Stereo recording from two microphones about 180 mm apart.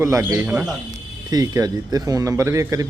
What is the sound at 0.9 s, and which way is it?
Speech, 20° right (ahead or behind).